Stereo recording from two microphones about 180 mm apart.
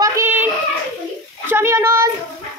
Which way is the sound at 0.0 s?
15° right (ahead or behind).